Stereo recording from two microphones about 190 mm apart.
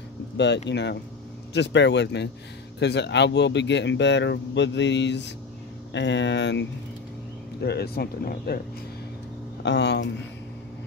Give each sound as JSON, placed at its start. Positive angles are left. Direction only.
{"t": 0.7, "sound": "speech", "side_deg": 65}
{"t": 7.6, "sound": "speech", "side_deg": 60}
{"t": 9.6, "sound": "speech", "side_deg": 65}